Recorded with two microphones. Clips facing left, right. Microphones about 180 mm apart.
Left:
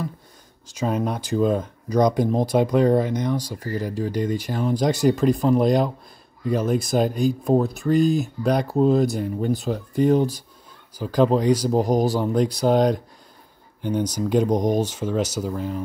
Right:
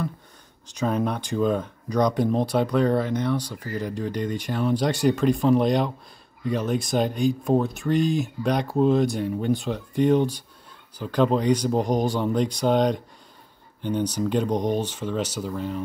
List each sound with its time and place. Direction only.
0.8 s speech: 10° left (ahead or behind)
14.7 s speech: 40° left (ahead or behind)
15.4 s speech: 5° left (ahead or behind)